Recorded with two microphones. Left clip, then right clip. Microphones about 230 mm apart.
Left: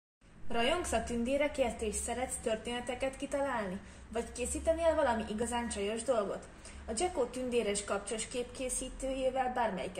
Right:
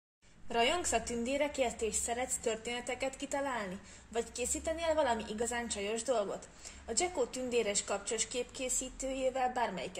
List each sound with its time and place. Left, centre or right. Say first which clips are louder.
0.5 s a woman's voice: right 1 dB; right